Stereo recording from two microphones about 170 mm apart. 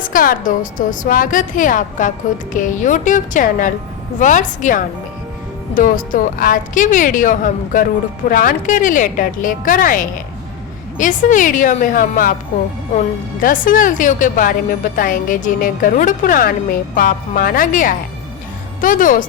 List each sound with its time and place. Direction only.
0.0 s speech: 55° left (ahead or behind)
13.4 s speech: 50° left (ahead or behind)